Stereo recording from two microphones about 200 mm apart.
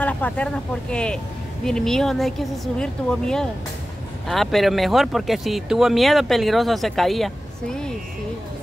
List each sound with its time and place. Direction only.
0.0 s speech: 5° left (ahead or behind)